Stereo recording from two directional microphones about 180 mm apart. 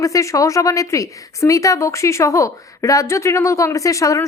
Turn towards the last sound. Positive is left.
turn(degrees=15)  # may be behind; listen again after turning